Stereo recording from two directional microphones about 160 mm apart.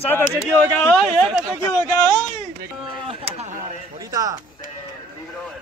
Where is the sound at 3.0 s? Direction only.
40° right (ahead or behind).